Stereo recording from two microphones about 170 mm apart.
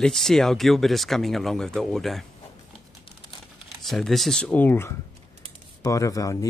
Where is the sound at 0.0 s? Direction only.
Centre (ahead or behind).